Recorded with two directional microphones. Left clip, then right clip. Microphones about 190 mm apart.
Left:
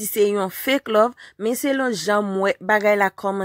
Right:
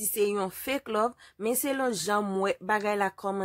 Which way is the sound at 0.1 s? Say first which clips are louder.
Left 8 dB; 25° left (ahead or behind).